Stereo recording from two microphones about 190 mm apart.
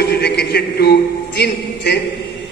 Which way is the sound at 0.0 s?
60° left (ahead or behind).